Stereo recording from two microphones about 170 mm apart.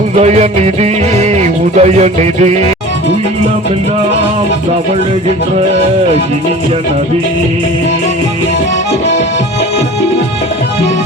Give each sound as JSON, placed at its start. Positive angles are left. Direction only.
{"t": 0.2, "sound": "music", "side_deg": -40}